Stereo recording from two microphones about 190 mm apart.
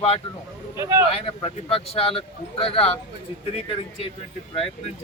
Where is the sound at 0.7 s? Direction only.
15° right (ahead or behind).